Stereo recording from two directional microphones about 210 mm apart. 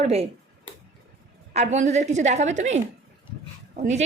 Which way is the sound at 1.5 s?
35° right (ahead or behind).